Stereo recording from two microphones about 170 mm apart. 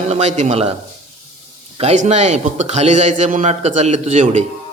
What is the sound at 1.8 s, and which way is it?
A man's voice, 40° right (ahead or behind).